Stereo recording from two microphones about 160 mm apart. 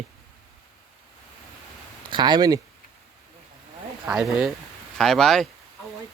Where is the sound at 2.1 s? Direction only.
25° right (ahead or behind).